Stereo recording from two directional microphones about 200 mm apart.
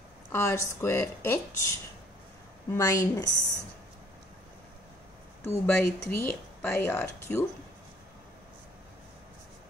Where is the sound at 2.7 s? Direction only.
15° left (ahead or behind).